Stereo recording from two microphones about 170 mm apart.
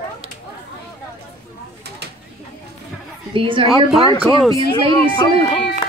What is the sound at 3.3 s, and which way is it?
Speech, 30° right (ahead or behind).